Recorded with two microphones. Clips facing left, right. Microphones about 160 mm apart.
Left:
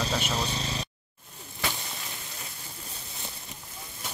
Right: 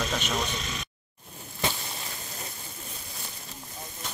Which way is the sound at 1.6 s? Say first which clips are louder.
Right 3 dB; 20° right (ahead or behind).